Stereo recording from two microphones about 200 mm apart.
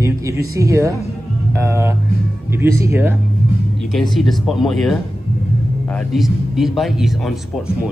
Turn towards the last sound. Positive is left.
turn(degrees=0)  # may be behind; listen again after turning